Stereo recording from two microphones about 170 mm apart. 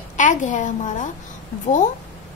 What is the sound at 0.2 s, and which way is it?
Speech, 45° left (ahead or behind).